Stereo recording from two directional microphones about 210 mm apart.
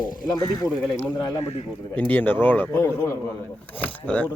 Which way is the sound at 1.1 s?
20° left (ahead or behind).